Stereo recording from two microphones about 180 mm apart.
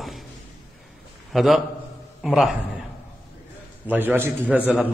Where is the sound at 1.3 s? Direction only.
Centre (ahead or behind).